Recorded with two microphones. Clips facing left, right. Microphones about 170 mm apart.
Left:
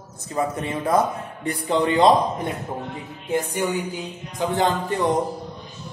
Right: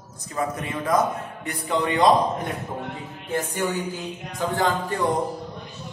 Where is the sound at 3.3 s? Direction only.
15° left (ahead or behind).